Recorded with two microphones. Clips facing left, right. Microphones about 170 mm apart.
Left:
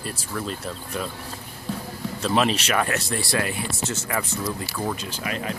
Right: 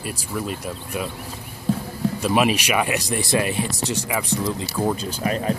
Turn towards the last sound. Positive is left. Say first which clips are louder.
# right 6 dB
turn(degrees=-35)  # may be behind; listen again after turning